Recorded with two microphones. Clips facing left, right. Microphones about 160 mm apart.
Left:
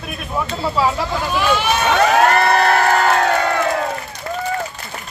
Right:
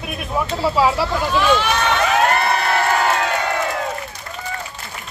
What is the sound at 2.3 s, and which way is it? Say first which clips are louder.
Crowd: left 4 dB; 50° left (ahead or behind).